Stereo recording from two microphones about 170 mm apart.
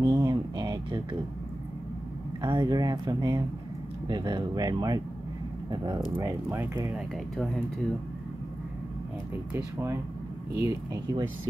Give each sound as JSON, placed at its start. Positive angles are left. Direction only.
{"t": 0.0, "sound": "a sound", "side_deg": -25}
{"t": 2.4, "sound": "speech", "side_deg": -25}
{"t": 9.5, "sound": "speech", "side_deg": -15}